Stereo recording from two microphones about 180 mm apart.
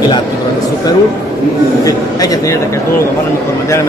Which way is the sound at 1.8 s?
20° left (ahead or behind).